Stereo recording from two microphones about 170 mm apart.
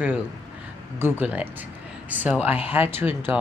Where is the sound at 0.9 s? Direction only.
15° right (ahead or behind).